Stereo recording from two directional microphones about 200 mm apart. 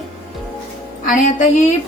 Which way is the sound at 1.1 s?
40° left (ahead or behind).